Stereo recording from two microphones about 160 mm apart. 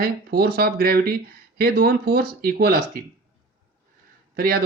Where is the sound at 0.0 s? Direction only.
65° right (ahead or behind).